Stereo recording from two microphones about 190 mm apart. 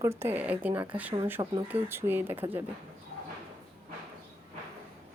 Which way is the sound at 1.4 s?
20° right (ahead or behind).